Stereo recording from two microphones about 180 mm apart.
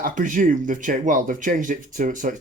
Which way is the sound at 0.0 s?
45° right (ahead or behind).